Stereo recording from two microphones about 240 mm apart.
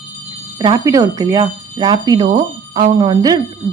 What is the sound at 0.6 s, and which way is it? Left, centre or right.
A woman's voice, centre.